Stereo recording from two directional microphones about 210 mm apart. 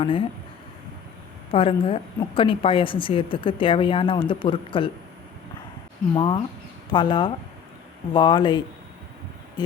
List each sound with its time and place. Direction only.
0.0 s a woman's voice: 25° left (ahead or behind)
1.5 s a woman's voice: 25° left (ahead or behind)
6.1 s a woman's voice: 25° left (ahead or behind)